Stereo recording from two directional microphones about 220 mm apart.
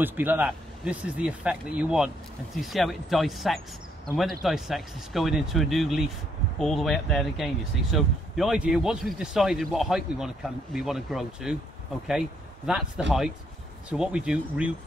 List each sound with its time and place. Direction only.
0.0 s speech: 10° right (ahead or behind)